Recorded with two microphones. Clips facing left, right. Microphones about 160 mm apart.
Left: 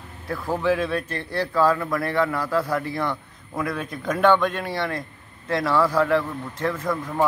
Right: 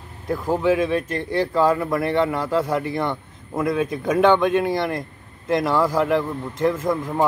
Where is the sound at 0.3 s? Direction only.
15° right (ahead or behind).